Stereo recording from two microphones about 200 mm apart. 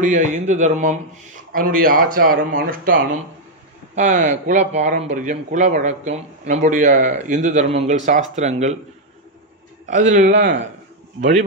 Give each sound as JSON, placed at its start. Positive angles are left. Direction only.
{"t": 0.0, "sound": "speech", "side_deg": -40}
{"t": 9.8, "sound": "speech", "side_deg": -40}